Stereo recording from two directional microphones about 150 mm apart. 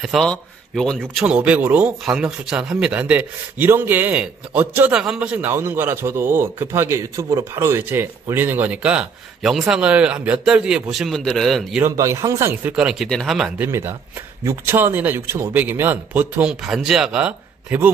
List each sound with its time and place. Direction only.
0.0 s a man's voice: centre (ahead or behind)
1.1 s a man's voice: 10° right (ahead or behind)
11.8 s a man's voice: 20° right (ahead or behind)
12.7 s speech: 5° right (ahead or behind)
13.6 s a man's voice: 15° right (ahead or behind)